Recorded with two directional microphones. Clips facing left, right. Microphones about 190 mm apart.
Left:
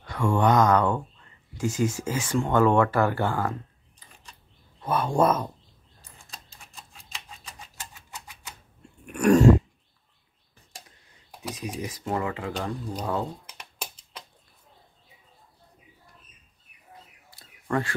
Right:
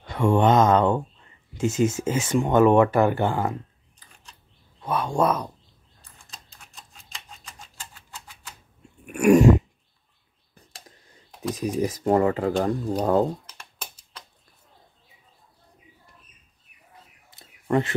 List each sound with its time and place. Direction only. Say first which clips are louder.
0.0 s speech: right 4 dB; 20° right (ahead or behind)
4.8 s speech: even; centre (ahead or behind)
6.7 s typewriter: left 1 dB; 5° left (ahead or behind)
9.0 s a sound: right 2 dB; 10° right (ahead or behind)
11.6 s speech: right 10 dB; 40° right (ahead or behind)
13.5 s typing: left 2 dB; 10° left (ahead or behind)
17.3 s a sound: right 5 dB; 20° right (ahead or behind)